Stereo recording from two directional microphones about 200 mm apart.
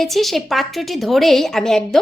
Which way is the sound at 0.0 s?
Centre (ahead or behind).